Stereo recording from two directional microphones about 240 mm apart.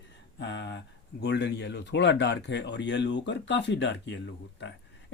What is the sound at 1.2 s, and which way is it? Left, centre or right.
Speech, left.